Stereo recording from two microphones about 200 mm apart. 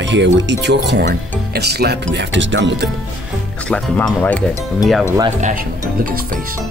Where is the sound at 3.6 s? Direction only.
5° left (ahead or behind).